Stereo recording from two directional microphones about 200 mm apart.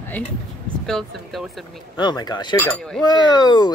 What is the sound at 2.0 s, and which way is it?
Speech, 20° left (ahead or behind).